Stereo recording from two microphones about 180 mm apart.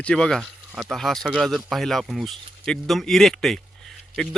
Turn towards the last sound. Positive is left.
turn(degrees=5)  # may be behind; listen again after turning